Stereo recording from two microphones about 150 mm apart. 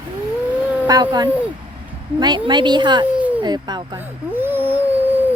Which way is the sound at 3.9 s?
15° right (ahead or behind).